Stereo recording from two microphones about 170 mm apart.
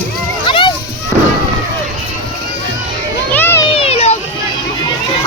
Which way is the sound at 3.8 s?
35° left (ahead or behind).